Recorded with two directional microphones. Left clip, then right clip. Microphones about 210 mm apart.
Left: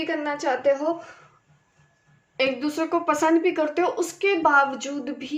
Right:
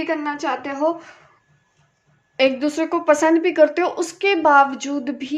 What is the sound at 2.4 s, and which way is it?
Speech, 45° right (ahead or behind).